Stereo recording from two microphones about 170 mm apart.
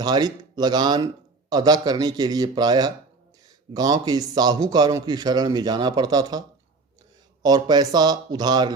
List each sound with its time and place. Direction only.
0.0 s speech: 25° right (ahead or behind)
7.4 s speech: 25° right (ahead or behind)